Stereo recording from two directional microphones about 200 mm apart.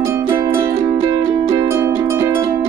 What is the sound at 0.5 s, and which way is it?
Music, 30° right (ahead or behind).